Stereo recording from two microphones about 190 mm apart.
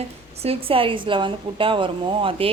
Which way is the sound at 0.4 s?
30° right (ahead or behind).